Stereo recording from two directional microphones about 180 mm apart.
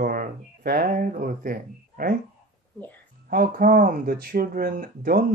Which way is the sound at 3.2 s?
50° right (ahead or behind).